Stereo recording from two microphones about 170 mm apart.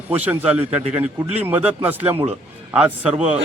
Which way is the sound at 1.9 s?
10° right (ahead or behind).